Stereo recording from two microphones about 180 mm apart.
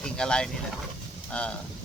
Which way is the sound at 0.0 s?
5° left (ahead or behind).